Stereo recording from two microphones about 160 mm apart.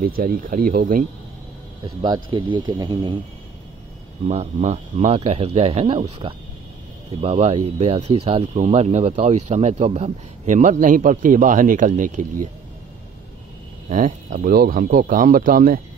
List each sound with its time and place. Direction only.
0.0 s speech: 65° right (ahead or behind)
2.0 s speech: 25° right (ahead or behind)
4.3 s speech: 40° right (ahead or behind)
13.8 s speech: 50° right (ahead or behind)